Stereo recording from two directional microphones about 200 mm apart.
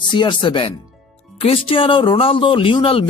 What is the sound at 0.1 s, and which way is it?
Speech, 25° left (ahead or behind).